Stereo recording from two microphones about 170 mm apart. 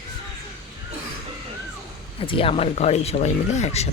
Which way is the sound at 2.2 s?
30° left (ahead or behind).